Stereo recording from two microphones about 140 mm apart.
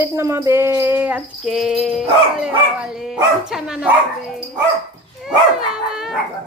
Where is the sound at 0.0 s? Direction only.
20° right (ahead or behind).